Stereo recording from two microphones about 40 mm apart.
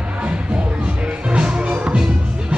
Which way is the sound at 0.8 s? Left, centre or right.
Right.